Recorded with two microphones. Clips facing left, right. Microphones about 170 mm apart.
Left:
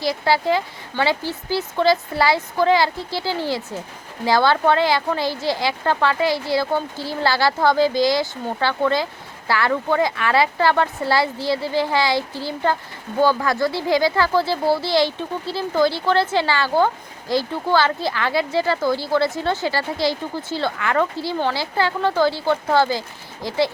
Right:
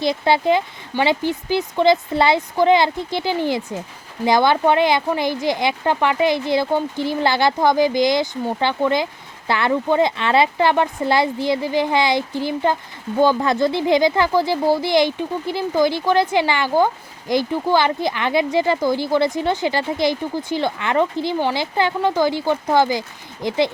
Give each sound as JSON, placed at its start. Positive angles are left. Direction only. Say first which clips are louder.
{"t": 0.0, "sound": "speech", "louder": "right 2 dB", "side_deg": -20}